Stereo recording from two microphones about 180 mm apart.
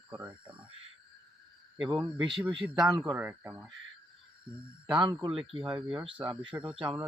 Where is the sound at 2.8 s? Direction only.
Centre (ahead or behind).